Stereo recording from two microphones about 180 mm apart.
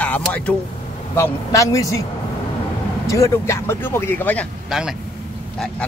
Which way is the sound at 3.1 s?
15° left (ahead or behind).